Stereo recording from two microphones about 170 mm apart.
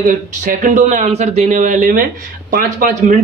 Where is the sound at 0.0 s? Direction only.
50° right (ahead or behind).